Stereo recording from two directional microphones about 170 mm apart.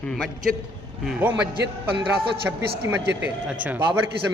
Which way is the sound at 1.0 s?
10° right (ahead or behind).